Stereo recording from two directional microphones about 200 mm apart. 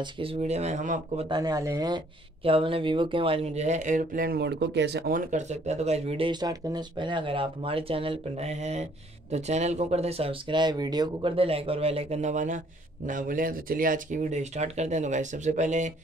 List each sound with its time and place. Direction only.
0.0 s speech: 30° right (ahead or behind)
1.3 s speech: 20° right (ahead or behind); by 15.9 s 35° right (ahead or behind)